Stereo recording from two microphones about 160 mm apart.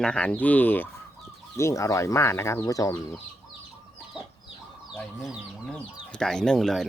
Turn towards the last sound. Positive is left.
turn(degrees=0)  # may be behind; listen again after turning